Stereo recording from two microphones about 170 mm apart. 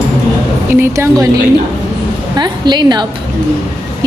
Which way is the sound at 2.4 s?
25° right (ahead or behind).